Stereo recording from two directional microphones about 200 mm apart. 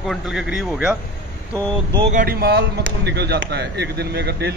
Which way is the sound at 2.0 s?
45° right (ahead or behind).